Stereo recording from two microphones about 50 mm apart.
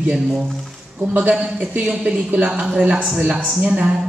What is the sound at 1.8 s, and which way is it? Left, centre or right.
Speech, centre.